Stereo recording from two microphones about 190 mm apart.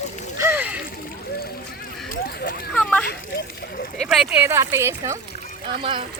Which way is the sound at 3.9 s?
Centre (ahead or behind).